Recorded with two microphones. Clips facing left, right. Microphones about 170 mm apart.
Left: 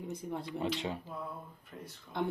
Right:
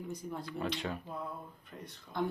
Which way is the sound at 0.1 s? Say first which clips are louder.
Left 4 dB; 25° left (ahead or behind).